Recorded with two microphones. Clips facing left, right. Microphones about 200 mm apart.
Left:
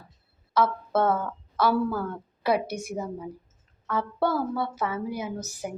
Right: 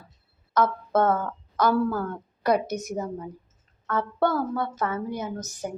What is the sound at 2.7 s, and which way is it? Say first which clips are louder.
Speech: right 2 dB; 40° right (ahead or behind).